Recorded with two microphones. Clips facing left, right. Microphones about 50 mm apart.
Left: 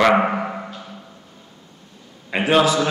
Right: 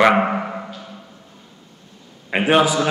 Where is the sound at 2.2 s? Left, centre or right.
Right.